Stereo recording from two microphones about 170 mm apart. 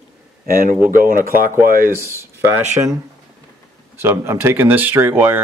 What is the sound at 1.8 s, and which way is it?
Speech, 15° right (ahead or behind).